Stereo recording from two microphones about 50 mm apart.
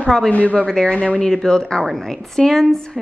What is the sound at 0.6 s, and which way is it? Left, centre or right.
Speech, centre.